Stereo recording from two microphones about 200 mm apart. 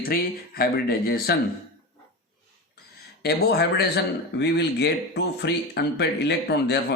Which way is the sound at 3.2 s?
55° left (ahead or behind).